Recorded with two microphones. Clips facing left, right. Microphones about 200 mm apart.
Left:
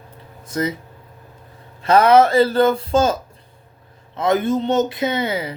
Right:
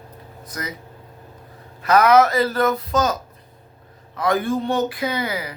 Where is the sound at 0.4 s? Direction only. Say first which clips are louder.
Left 10 dB; 25° left (ahead or behind).